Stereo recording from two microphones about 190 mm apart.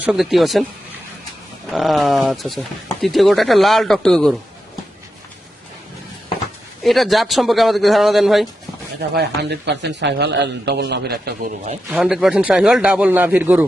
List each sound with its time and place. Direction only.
0.0 s speech: 5° right (ahead or behind)
1.7 s speech: centre (ahead or behind)
6.8 s speech: centre (ahead or behind)
9.0 s a man's voice: 60° right (ahead or behind)
11.9 s speech: 5° right (ahead or behind)